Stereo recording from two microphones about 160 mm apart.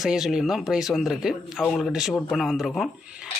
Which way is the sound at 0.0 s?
Centre (ahead or behind).